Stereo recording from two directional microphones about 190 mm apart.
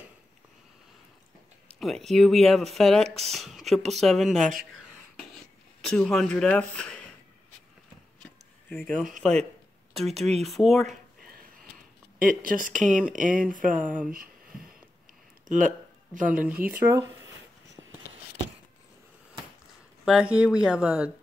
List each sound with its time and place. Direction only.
1.7 s speech: centre (ahead or behind)
8.2 s a sound: 5° left (ahead or behind)
9.2 s speech: 5° left (ahead or behind)
12.2 s speech: 45° right (ahead or behind)
15.4 s speech: 40° right (ahead or behind)
16.3 s speech: 10° right (ahead or behind)
20.1 s speech: 5° right (ahead or behind)